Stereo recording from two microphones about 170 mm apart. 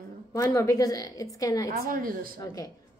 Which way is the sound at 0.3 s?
20° left (ahead or behind).